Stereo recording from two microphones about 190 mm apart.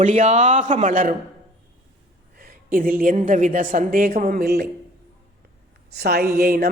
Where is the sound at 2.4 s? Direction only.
45° right (ahead or behind).